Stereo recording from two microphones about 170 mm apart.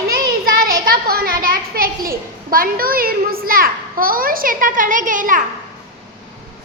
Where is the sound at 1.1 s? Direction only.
60° right (ahead or behind).